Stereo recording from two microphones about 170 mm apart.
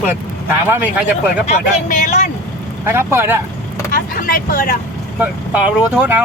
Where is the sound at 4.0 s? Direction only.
60° left (ahead or behind).